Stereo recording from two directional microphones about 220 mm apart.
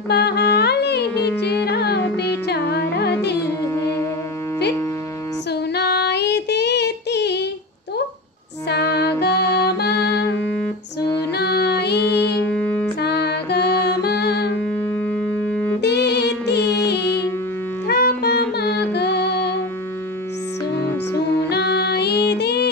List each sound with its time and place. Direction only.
0.1 s music: 50° left (ahead or behind)
3.6 s music: 10° left (ahead or behind)
5.5 s child singing: 50° left (ahead or behind)
8.6 s music: 50° left (ahead or behind)
11.3 s music: 50° left (ahead or behind)
12.4 s music: 5° left (ahead or behind)
13.0 s music: 50° left (ahead or behind)
14.6 s music: 5° left (ahead or behind)
15.8 s music: 50° left (ahead or behind)
20.9 s music: 10° left (ahead or behind)
21.5 s music: 50° left (ahead or behind)